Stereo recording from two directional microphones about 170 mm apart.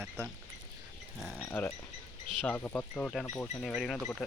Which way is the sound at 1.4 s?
10° left (ahead or behind).